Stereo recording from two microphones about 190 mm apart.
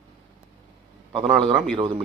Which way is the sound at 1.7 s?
25° right (ahead or behind).